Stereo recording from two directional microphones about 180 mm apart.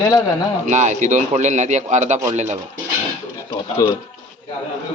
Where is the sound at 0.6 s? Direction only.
40° right (ahead or behind).